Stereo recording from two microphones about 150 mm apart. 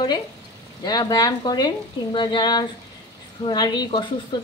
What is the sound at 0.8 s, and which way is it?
A woman's voice, 25° left (ahead or behind).